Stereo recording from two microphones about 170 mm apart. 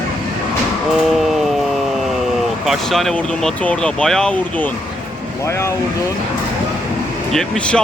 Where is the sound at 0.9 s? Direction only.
Centre (ahead or behind).